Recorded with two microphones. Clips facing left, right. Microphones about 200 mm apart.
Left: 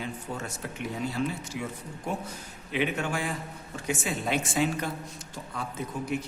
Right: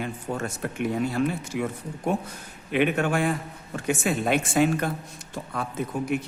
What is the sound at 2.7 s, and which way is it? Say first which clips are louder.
Speech: right 6 dB; 60° right (ahead or behind).